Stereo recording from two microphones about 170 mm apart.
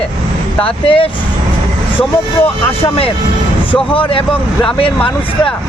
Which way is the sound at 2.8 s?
35° left (ahead or behind).